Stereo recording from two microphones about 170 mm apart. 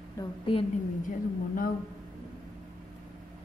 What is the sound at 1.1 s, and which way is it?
Speech, 55° left (ahead or behind).